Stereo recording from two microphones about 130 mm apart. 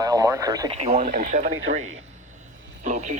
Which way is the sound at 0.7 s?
60° right (ahead or behind).